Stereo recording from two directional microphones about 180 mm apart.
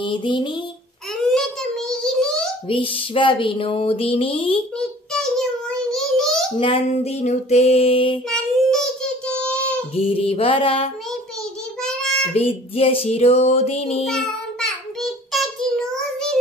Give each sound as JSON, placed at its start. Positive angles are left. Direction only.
{"t": 0.0, "sound": "a sound", "side_deg": 25}
{"t": 1.2, "sound": "a sound", "side_deg": 5}
{"t": 2.7, "sound": "a sound", "side_deg": 30}
{"t": 4.7, "sound": "child singing", "side_deg": 5}
{"t": 6.6, "sound": "music", "side_deg": 35}
{"t": 8.3, "sound": "child singing", "side_deg": 5}
{"t": 9.9, "sound": "music", "side_deg": 30}
{"t": 11.8, "sound": "child singing", "side_deg": 0}
{"t": 12.4, "sound": "music", "side_deg": 30}
{"t": 14.0, "sound": "child singing", "side_deg": 0}